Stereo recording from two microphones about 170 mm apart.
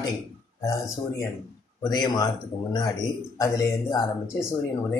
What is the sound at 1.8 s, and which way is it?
Speech, 25° left (ahead or behind).